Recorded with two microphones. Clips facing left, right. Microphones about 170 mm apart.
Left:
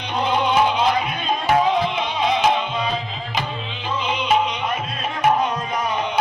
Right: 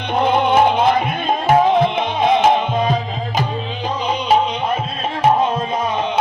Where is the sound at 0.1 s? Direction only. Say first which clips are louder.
Right 5 dB; 55° right (ahead or behind).